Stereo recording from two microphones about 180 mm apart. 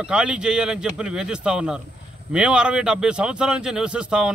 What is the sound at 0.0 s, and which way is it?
Speech, 5° right (ahead or behind).